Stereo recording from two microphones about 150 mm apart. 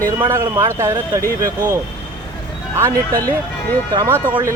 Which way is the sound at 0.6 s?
20° right (ahead or behind).